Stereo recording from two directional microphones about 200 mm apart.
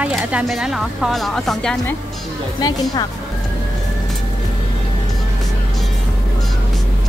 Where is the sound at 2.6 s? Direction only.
20° left (ahead or behind).